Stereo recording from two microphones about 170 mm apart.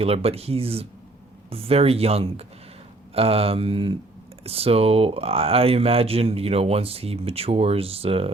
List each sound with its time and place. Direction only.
0.0 s speech: 35° right (ahead or behind)